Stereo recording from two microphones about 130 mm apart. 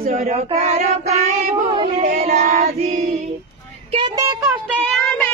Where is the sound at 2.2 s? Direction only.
55° right (ahead or behind).